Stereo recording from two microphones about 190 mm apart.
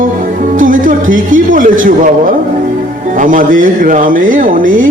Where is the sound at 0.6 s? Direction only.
45° right (ahead or behind).